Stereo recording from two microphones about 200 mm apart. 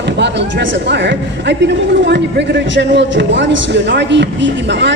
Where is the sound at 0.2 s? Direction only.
60° right (ahead or behind).